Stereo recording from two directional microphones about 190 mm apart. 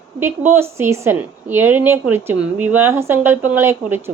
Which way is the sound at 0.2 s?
10° right (ahead or behind).